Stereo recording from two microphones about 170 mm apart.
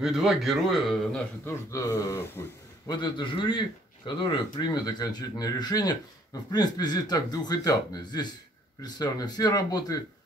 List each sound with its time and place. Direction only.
0.0 s a man's voice: centre (ahead or behind)
1.4 s a man's voice: 15° left (ahead or behind)